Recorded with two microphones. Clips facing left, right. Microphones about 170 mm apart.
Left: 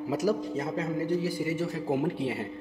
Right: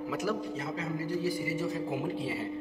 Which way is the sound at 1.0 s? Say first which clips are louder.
Left 1 dB; 65° left (ahead or behind).